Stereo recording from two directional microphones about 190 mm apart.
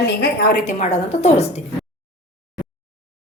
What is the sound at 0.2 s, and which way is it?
Speech, 55° left (ahead or behind).